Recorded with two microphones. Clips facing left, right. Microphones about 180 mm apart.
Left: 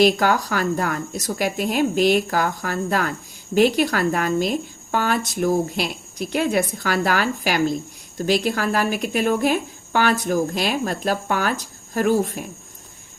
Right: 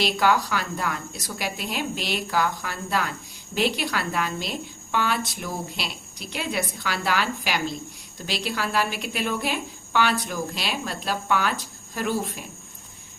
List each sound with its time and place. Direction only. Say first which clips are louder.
0.0 s speech: left 5 dB; 45° left (ahead or behind)